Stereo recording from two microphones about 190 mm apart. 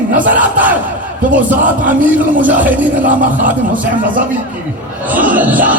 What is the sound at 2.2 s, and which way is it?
Battle cry, 45° right (ahead or behind).